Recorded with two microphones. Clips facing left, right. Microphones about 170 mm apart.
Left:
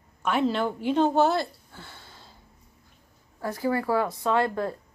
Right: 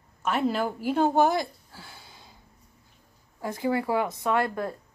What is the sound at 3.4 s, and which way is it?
Speech, 20° right (ahead or behind).